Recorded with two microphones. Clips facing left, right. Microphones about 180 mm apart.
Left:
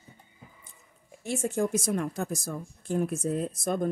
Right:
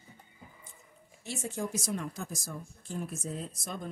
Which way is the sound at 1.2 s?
50° left (ahead or behind).